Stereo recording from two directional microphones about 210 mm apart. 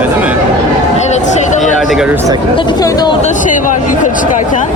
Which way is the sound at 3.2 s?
35° left (ahead or behind).